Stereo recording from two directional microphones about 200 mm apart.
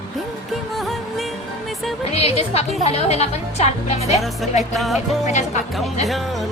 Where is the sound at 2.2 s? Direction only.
30° left (ahead or behind).